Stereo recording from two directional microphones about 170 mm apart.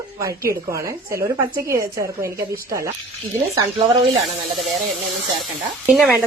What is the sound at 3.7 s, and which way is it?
Speech, 35° right (ahead or behind).